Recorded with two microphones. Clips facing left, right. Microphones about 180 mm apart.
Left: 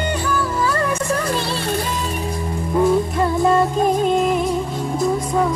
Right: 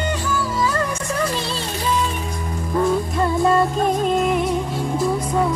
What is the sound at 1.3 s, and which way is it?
Music, 55° left (ahead or behind).